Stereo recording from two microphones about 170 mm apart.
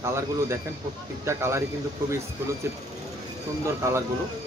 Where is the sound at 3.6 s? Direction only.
20° right (ahead or behind).